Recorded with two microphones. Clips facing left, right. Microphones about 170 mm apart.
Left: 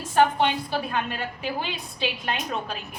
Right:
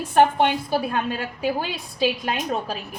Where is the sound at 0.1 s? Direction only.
55° right (ahead or behind).